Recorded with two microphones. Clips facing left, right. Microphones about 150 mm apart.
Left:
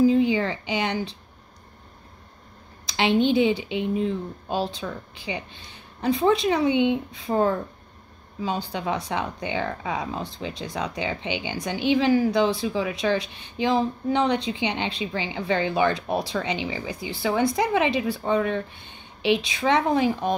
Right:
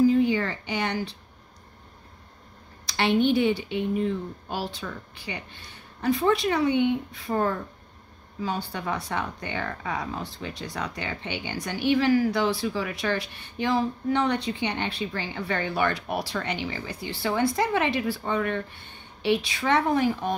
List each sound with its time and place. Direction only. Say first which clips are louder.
0.0 s a sound: left 1 dB; 20° left (ahead or behind)
0.7 s speech: left 2 dB; 20° left (ahead or behind)
3.0 s speech: left 2 dB; 20° left (ahead or behind)